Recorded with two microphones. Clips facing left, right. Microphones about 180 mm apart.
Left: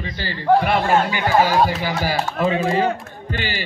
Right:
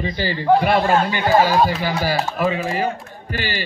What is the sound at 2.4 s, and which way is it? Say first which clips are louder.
Speech: left 2 dB; 25° left (ahead or behind).